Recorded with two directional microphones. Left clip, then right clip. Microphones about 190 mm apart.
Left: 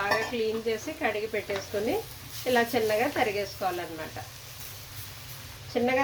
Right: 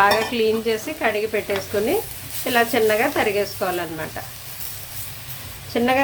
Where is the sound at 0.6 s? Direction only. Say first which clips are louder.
Right 7 dB; 25° right (ahead or behind).